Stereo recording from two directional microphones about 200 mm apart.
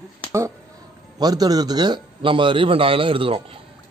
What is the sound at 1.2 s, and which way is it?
A man's voice, 20° right (ahead or behind).